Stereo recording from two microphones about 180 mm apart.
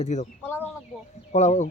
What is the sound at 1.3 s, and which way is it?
Speech, 40° left (ahead or behind).